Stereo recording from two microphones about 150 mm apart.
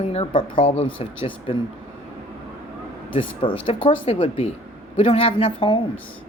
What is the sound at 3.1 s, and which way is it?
Speech, 35° left (ahead or behind).